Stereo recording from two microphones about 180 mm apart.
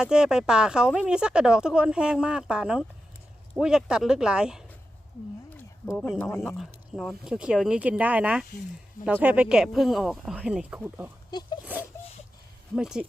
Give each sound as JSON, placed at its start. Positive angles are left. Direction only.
{"t": 0.0, "sound": "speech", "side_deg": -5}
{"t": 5.5, "sound": "speech", "side_deg": 5}
{"t": 6.9, "sound": "speech", "side_deg": 0}
{"t": 11.3, "sound": "speech", "side_deg": 25}
{"t": 11.6, "sound": "a sound", "side_deg": -10}
{"t": 12.7, "sound": "speech", "side_deg": -5}